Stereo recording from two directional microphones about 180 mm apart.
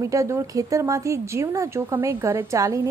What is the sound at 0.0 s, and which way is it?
A woman's voice, 15° right (ahead or behind).